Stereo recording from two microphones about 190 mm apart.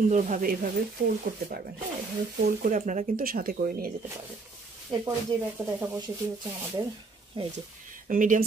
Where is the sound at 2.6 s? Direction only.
45° right (ahead or behind).